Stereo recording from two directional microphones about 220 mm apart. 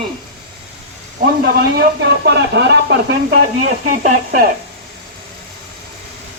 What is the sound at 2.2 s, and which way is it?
Speech, 50° right (ahead or behind).